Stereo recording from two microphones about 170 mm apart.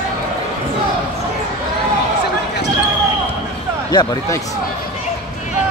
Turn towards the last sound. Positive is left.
turn(degrees=25)  # may be behind; listen again after turning